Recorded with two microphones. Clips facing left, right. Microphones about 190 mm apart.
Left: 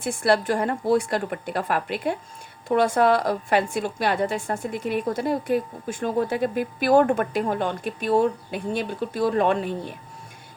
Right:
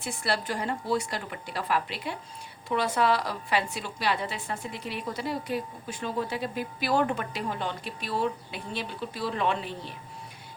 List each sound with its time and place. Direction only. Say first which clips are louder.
0.0 s a woman's voice: left 9 dB; 50° left (ahead or behind)